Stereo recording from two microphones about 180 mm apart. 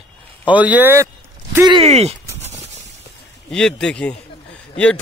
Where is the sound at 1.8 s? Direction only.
35° right (ahead or behind).